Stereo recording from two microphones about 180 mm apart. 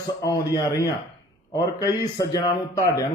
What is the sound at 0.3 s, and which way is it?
A man's voice, 20° left (ahead or behind).